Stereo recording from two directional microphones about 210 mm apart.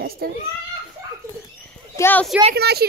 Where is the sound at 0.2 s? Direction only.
45° right (ahead or behind).